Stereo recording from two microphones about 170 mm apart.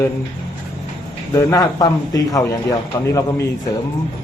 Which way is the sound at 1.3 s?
20° left (ahead or behind).